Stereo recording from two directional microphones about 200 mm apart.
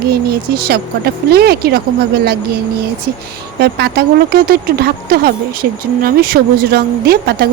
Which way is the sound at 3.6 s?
55° right (ahead or behind).